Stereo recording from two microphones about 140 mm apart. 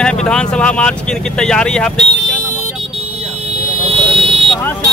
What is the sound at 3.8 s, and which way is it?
Vehicle, 45° right (ahead or behind).